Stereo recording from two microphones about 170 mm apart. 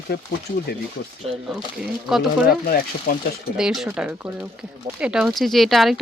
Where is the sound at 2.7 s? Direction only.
60° left (ahead or behind).